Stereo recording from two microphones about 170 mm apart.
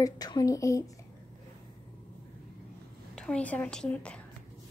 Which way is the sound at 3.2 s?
5° left (ahead or behind).